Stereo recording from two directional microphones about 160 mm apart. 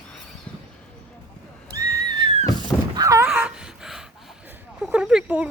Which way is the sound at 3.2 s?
5° right (ahead or behind).